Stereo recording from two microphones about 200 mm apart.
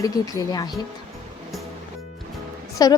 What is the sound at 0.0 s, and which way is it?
Speech, 20° left (ahead or behind).